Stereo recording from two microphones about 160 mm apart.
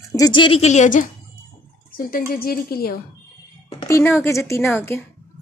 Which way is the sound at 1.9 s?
65° left (ahead or behind).